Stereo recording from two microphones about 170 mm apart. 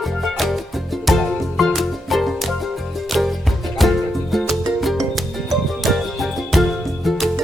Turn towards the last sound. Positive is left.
turn(degrees=0)  # may be behind; listen again after turning